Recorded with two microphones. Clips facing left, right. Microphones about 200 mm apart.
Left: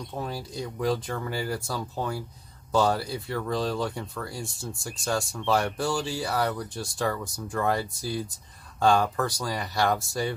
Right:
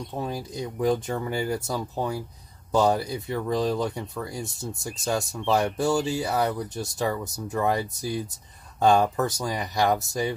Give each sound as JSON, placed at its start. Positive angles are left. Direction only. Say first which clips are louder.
{"t": 0.1, "sound": "speech", "louder": "right 2 dB", "side_deg": -15}